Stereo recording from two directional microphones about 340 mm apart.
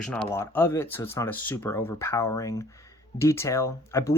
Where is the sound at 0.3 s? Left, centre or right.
Centre.